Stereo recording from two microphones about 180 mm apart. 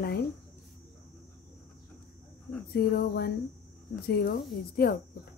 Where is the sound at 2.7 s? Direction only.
60° left (ahead or behind).